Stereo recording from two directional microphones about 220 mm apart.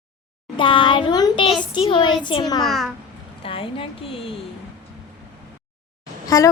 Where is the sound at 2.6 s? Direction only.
Centre (ahead or behind).